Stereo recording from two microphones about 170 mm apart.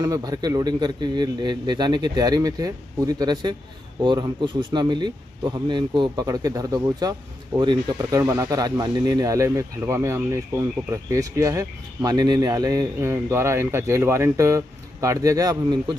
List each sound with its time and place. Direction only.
0.0 s speech: 20° right (ahead or behind)